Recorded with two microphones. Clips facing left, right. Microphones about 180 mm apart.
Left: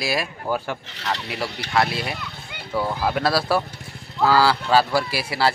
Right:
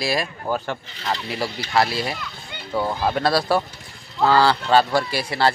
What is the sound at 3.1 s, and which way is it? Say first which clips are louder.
Speech: right 1 dB; 5° left (ahead or behind).